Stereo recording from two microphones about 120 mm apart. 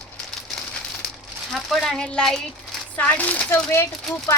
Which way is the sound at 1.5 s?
Centre (ahead or behind).